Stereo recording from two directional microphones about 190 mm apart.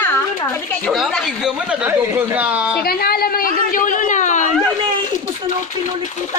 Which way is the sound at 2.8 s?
55° left (ahead or behind).